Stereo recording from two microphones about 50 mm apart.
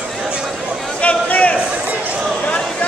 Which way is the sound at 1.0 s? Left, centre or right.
Left.